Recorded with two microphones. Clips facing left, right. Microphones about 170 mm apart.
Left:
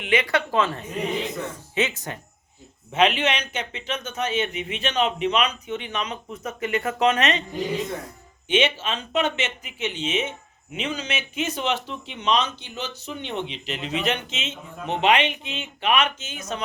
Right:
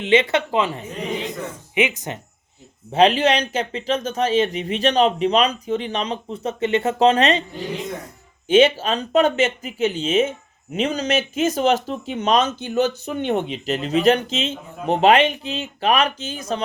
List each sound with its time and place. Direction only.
0.0 s a woman's voice: 25° right (ahead or behind)
2.9 s speech: 35° right (ahead or behind)
8.4 s speech: 40° right (ahead or behind)